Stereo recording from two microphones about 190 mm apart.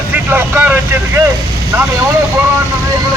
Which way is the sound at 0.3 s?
10° right (ahead or behind).